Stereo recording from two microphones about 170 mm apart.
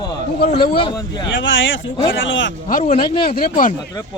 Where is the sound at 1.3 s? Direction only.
90° left.